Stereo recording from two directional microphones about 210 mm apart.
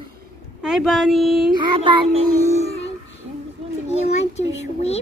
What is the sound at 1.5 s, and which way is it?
Child singing, 25° right (ahead or behind).